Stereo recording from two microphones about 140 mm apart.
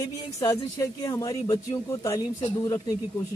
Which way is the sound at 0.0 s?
25° left (ahead or behind).